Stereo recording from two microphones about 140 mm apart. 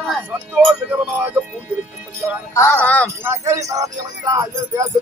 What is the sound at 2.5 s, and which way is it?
Speech, 15° left (ahead or behind).